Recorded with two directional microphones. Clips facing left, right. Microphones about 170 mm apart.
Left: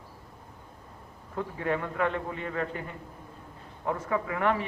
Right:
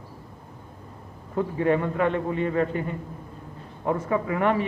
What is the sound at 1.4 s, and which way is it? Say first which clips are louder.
A man's voice: right 8 dB; 25° right (ahead or behind).